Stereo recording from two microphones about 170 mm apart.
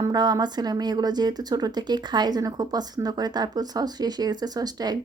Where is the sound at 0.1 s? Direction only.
25° right (ahead or behind).